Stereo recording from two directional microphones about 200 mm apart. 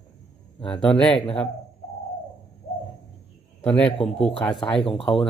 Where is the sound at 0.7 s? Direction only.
5° left (ahead or behind).